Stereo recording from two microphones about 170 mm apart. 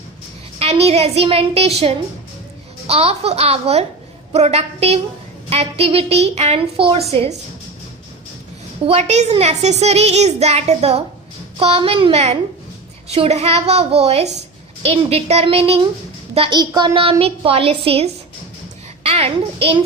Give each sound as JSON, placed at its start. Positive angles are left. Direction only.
{"t": 0.6, "sound": "a child's voice", "side_deg": -35}
{"t": 2.8, "sound": "a child's voice", "side_deg": -35}
{"t": 8.9, "sound": "a child's voice", "side_deg": -40}